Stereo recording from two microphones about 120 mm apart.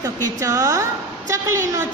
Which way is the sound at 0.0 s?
30° right (ahead or behind).